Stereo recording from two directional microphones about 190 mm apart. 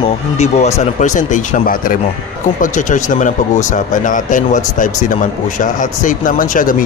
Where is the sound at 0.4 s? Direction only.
35° left (ahead or behind).